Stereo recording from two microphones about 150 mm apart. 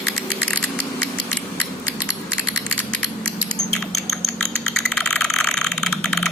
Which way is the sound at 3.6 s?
5° left (ahead or behind).